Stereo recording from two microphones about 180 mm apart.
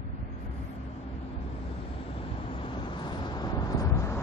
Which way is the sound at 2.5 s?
30° left (ahead or behind).